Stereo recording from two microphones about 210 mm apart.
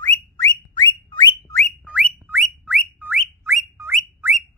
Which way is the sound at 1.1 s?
20° left (ahead or behind).